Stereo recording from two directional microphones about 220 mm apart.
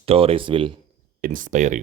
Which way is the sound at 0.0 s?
25° right (ahead or behind).